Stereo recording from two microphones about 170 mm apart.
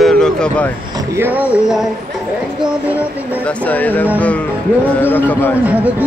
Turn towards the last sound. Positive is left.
turn(degrees=10)  # may be behind; listen again after turning